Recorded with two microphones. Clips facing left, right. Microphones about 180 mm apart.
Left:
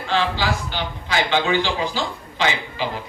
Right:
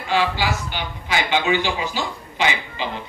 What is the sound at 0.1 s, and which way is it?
A man's voice, 15° right (ahead or behind).